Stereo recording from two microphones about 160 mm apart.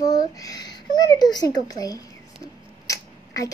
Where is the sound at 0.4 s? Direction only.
25° left (ahead or behind).